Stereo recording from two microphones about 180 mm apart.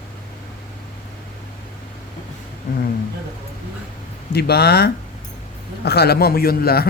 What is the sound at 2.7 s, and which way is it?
Speech, 55° left (ahead or behind).